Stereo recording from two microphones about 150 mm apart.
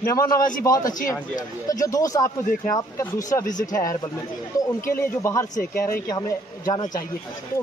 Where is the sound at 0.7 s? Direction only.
25° left (ahead or behind).